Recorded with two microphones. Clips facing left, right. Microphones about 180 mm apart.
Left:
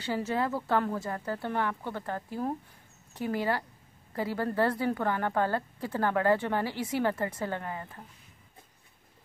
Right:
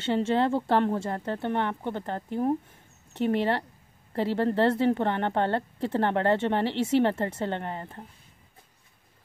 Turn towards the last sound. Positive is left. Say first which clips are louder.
# right 3 dB
turn(degrees=-25)  # may be behind; listen again after turning